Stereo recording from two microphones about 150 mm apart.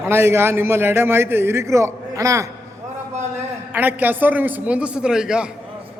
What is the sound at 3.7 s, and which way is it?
A man's voice, 10° right (ahead or behind).